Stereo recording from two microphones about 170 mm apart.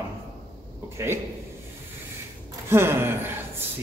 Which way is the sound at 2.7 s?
15° right (ahead or behind).